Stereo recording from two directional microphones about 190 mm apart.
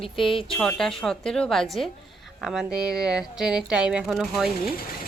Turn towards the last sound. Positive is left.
turn(degrees=-5)  # may be behind; listen again after turning